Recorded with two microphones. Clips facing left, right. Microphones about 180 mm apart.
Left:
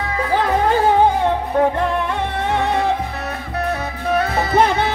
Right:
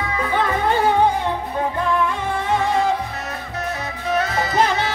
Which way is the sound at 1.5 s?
60° left (ahead or behind).